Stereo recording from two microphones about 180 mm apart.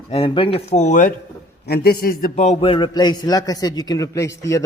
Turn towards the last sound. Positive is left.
turn(degrees=15)  # may be behind; listen again after turning